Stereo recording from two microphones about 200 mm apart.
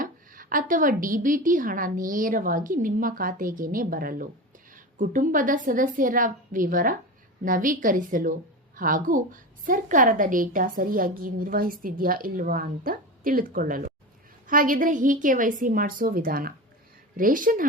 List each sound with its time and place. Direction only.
0.0 s a woman's voice: 45° right (ahead or behind)